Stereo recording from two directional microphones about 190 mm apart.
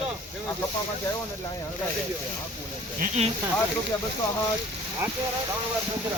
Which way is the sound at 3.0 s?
35° right (ahead or behind).